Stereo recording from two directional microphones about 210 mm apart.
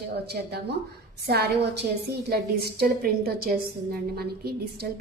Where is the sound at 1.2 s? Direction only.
50° right (ahead or behind).